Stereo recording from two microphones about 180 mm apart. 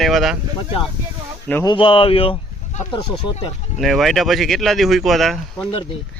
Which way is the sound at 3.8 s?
Centre (ahead or behind).